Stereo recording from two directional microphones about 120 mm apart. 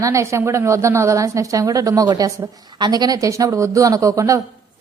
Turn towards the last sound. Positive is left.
turn(degrees=-25)  # may be behind; listen again after turning